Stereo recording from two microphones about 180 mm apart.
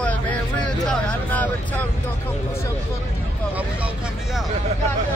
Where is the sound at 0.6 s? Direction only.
5° left (ahead or behind).